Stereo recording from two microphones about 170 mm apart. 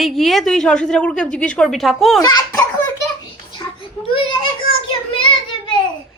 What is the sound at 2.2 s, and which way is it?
Speech, 20° left (ahead or behind).